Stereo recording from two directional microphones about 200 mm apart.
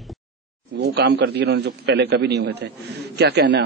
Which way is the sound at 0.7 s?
55° right (ahead or behind).